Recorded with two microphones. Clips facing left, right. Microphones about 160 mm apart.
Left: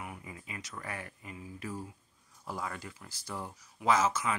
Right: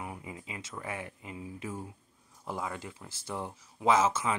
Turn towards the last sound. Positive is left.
turn(degrees=-25)  # may be behind; listen again after turning